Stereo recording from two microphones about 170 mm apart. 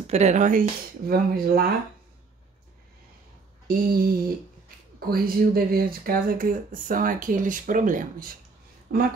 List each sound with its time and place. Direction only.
0.0 s speech: 40° right (ahead or behind); by 1.7 s 60° right (ahead or behind)
3.6 s speech: 60° right (ahead or behind)
8.9 s speech: 70° right (ahead or behind)